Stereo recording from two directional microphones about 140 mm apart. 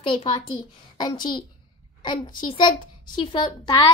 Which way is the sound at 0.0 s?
35° left (ahead or behind).